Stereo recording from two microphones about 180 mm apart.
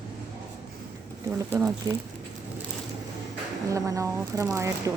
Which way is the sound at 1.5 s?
15° right (ahead or behind).